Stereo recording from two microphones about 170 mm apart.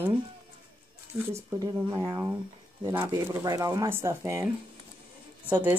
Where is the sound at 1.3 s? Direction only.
15° right (ahead or behind).